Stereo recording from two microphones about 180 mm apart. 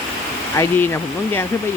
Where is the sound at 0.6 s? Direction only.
10° left (ahead or behind).